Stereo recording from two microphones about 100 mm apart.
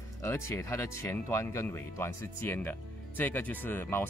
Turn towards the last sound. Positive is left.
turn(degrees=20)  # may be behind; listen again after turning